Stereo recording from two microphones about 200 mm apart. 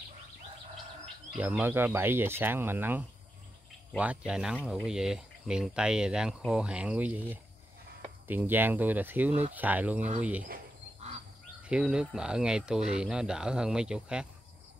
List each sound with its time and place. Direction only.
1.0 s speech: 5° right (ahead or behind)
4.6 s speech: 10° left (ahead or behind)
4.8 s speech: 5° right (ahead or behind)
10.4 s cricket: 40° right (ahead or behind)
11.6 s speech: 5° right (ahead or behind)